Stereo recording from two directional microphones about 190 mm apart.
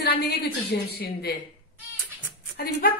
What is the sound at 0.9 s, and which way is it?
Speech, 55° left (ahead or behind).